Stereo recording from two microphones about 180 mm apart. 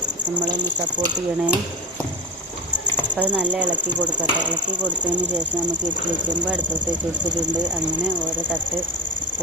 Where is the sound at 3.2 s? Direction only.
5° right (ahead or behind).